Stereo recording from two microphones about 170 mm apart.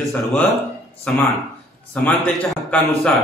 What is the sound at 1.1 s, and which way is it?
A man's voice, 5° left (ahead or behind).